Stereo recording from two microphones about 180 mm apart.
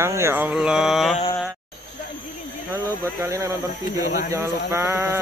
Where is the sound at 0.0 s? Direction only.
15° right (ahead or behind).